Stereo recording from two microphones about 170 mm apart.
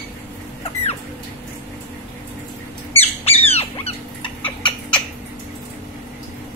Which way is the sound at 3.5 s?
35° left (ahead or behind).